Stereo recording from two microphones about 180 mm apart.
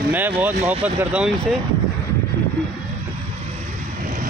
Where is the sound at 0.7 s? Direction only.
10° right (ahead or behind).